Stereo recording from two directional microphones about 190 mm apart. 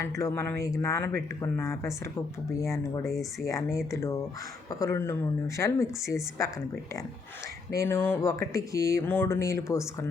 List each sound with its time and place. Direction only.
0.0 s speech: 15° left (ahead or behind)
7.7 s speech: 15° left (ahead or behind)